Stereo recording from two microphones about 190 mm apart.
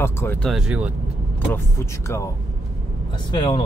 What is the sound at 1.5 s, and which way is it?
Speech, 15° left (ahead or behind).